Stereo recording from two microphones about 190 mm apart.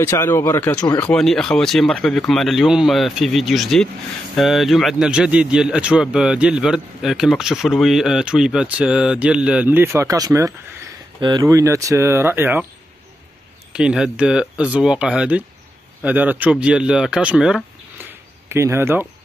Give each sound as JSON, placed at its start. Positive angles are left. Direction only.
{"t": 0.0, "sound": "speech", "side_deg": 15}
{"t": 13.7, "sound": "speech", "side_deg": -5}
{"t": 18.5, "sound": "speech", "side_deg": -15}